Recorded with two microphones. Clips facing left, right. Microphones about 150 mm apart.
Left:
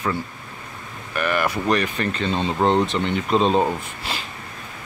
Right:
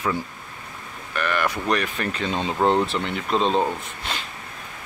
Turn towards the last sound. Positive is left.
turn(degrees=5)  # may be behind; listen again after turning